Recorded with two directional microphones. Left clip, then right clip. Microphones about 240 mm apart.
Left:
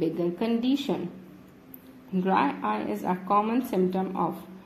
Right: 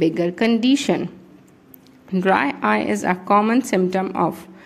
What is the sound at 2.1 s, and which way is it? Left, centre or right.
A woman's voice, right.